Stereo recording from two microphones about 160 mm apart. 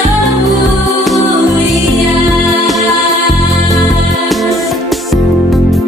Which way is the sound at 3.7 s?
Centre (ahead or behind).